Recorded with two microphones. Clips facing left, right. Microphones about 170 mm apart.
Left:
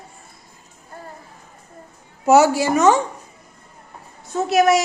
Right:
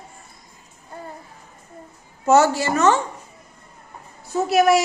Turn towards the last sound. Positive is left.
turn(degrees=0)  # may be behind; listen again after turning